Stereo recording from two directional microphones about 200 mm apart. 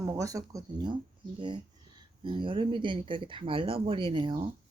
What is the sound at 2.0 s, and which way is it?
Speech, 25° right (ahead or behind).